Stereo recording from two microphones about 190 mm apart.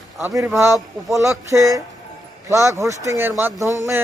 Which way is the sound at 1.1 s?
15° right (ahead or behind).